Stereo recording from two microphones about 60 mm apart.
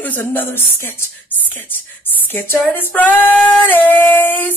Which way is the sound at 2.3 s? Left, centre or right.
Left.